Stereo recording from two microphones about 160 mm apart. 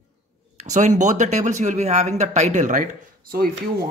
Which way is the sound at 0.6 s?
50° right (ahead or behind).